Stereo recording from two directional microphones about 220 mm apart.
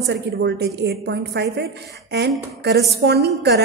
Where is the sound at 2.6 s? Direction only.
50° right (ahead or behind).